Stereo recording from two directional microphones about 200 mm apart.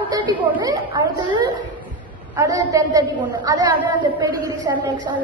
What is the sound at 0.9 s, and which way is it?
A woman's voice, 20° right (ahead or behind).